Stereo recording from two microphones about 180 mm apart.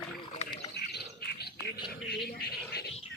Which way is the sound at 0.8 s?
65° left (ahead or behind).